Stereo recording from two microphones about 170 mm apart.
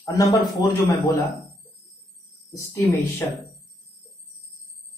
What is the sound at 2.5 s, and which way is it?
Speech, 15° left (ahead or behind).